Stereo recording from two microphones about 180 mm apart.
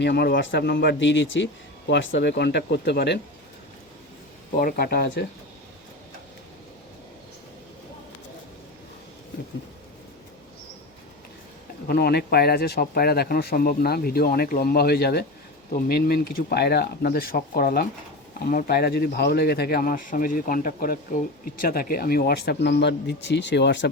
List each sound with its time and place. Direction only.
0.0 s speech: 65° left (ahead or behind)
4.5 s speech: 55° left (ahead or behind)
11.9 s speech: 60° left (ahead or behind)